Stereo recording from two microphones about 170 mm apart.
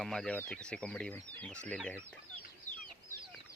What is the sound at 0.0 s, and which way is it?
Speech, 5° left (ahead or behind).